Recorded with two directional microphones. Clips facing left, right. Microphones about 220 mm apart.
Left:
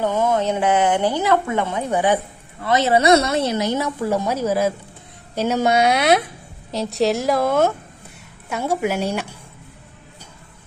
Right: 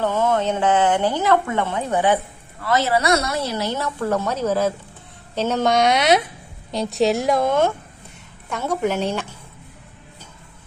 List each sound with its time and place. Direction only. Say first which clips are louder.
0.0 s a woman's voice: left 1 dB; 15° left (ahead or behind)